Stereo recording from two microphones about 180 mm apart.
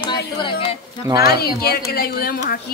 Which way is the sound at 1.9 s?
55° left (ahead or behind).